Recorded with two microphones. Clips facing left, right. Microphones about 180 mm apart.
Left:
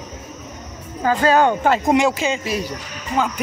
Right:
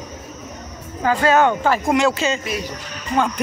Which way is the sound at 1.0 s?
35° left (ahead or behind).